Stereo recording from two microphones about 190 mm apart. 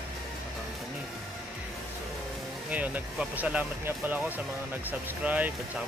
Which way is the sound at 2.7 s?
10° right (ahead or behind).